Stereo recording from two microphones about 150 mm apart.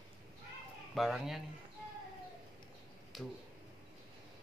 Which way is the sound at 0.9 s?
Centre (ahead or behind).